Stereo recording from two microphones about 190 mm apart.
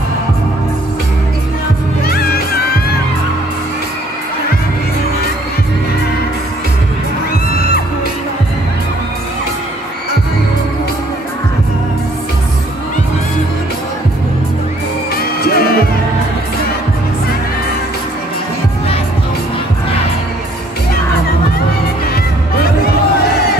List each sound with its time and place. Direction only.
2.0 s music: 55° left (ahead or behind)
15.1 s music: 55° left (ahead or behind)